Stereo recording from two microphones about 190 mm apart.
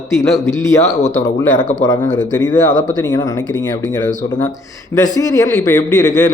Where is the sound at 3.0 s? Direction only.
15° left (ahead or behind).